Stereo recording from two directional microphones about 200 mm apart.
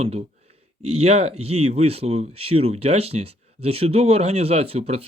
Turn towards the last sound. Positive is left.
turn(degrees=-30)  # may be behind; listen again after turning